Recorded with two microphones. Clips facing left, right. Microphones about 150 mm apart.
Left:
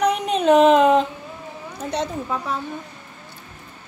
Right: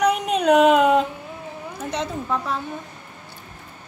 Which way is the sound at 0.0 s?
Centre (ahead or behind).